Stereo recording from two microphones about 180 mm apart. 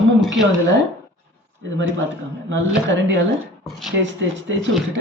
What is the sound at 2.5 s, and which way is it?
Speech, 90° right.